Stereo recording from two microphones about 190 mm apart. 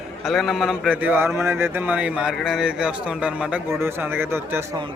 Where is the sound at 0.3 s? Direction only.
Centre (ahead or behind).